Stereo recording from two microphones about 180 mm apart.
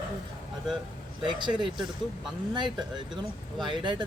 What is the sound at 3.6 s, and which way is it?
Speech, 25° right (ahead or behind).